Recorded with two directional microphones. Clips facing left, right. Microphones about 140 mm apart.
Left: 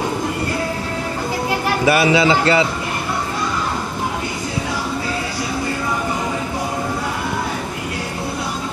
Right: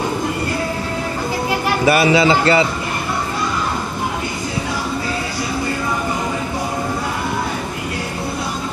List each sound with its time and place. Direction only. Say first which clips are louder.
1.9 s a man's voice: right 1 dB; 35° right (ahead or behind)